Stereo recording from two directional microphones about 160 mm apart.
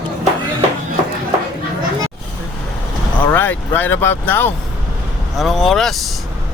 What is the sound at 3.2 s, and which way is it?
Speech, 10° left (ahead or behind).